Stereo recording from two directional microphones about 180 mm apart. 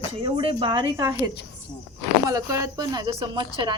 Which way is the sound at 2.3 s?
20° right (ahead or behind).